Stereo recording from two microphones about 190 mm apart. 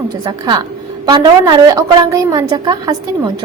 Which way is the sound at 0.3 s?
25° right (ahead or behind).